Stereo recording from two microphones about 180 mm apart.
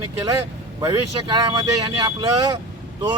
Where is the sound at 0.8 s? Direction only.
20° right (ahead or behind).